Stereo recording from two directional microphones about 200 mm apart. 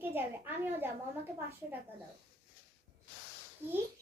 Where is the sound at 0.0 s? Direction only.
10° right (ahead or behind).